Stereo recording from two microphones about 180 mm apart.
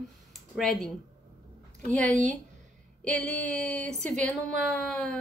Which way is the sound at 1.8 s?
55° left (ahead or behind).